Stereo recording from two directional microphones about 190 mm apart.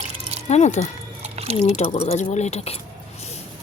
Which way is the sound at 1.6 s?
35° left (ahead or behind).